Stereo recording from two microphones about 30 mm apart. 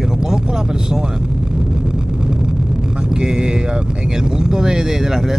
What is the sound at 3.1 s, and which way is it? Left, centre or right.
Speech, right.